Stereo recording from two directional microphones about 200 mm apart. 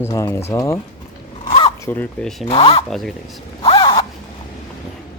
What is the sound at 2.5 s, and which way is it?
Speech, 30° left (ahead or behind).